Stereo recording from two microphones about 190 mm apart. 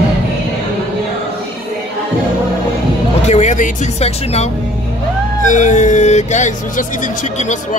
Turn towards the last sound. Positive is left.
turn(degrees=40)  # may be behind; listen again after turning